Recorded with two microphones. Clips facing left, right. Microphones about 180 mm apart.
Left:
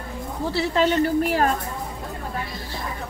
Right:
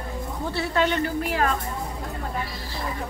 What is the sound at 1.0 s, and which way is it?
Speech, 40° left (ahead or behind).